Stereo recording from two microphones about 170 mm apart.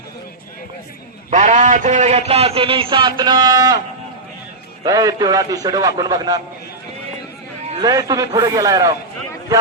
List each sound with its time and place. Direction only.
1.3 s a man's voice: 45° right (ahead or behind); by 3.8 s 25° right (ahead or behind)
4.8 s a man's voice: 20° right (ahead or behind)
7.8 s a man's voice: 20° right (ahead or behind)